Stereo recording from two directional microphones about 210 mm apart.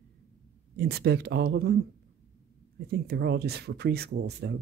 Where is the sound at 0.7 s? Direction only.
50° right (ahead or behind).